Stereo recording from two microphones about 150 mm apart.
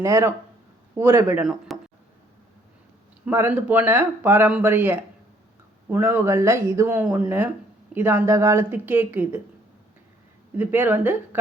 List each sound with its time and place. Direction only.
0.0 s speech: 20° right (ahead or behind)
1.4 s speech: 5° right (ahead or behind)
3.2 s speech: 15° right (ahead or behind)
10.6 s speech: 15° right (ahead or behind)